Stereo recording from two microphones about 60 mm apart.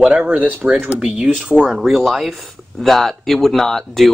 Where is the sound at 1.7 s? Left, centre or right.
Centre.